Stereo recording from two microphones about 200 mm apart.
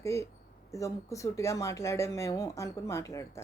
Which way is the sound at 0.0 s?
15° left (ahead or behind).